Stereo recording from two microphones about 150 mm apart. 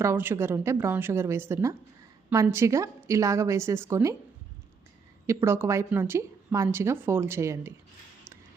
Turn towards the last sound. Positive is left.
turn(degrees=-20)  # may be behind; listen again after turning